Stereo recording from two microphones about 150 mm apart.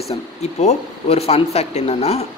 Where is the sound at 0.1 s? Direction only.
45° left (ahead or behind).